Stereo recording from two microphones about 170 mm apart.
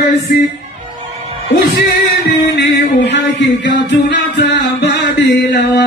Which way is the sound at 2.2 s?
85° left.